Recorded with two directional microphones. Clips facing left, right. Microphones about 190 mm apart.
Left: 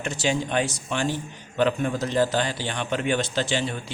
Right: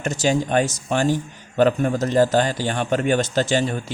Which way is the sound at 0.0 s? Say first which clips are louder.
Right 5 dB; 45° right (ahead or behind).